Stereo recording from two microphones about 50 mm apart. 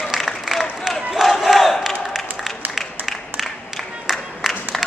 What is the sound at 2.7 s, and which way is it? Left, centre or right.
Applause, centre.